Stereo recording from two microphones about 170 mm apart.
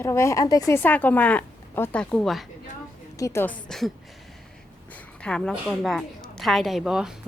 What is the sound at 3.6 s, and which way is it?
Speech, centre (ahead or behind).